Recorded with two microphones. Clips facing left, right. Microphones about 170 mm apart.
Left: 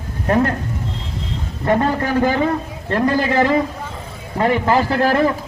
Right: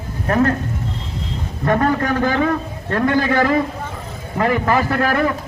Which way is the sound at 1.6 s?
25° left (ahead or behind).